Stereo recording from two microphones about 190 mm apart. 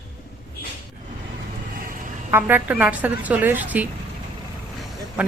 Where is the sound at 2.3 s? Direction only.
10° right (ahead or behind).